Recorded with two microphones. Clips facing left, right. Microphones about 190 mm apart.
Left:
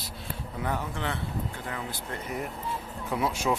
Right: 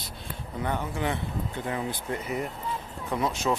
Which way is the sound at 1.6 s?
20° right (ahead or behind).